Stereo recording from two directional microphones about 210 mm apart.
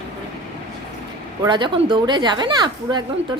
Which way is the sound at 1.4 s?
20° right (ahead or behind).